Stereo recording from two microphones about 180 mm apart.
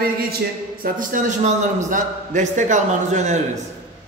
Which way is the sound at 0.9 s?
45° right (ahead or behind).